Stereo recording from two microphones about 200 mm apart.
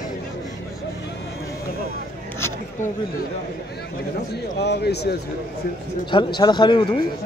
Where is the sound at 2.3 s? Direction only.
10° left (ahead or behind).